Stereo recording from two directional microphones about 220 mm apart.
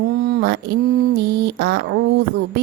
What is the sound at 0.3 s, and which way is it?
Mantra, 45° right (ahead or behind).